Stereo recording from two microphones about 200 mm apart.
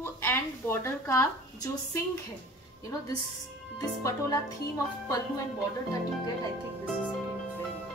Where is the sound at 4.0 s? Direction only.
15° left (ahead or behind).